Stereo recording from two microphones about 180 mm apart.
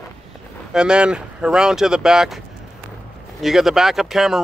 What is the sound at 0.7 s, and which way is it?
Speech, 5° right (ahead or behind).